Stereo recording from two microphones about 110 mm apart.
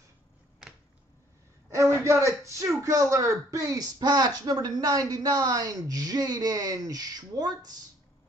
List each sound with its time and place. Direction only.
1.7 s a man's voice: 30° right (ahead or behind)